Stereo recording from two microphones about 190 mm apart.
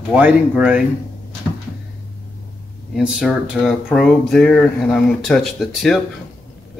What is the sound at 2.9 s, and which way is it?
Speech, 5° right (ahead or behind).